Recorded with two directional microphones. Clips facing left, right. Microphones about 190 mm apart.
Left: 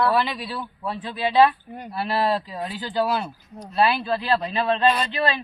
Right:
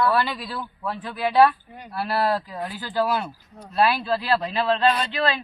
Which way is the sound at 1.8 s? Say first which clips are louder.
Even; 20° left (ahead or behind).